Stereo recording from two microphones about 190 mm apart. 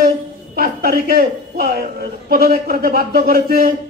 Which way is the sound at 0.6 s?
50° right (ahead or behind).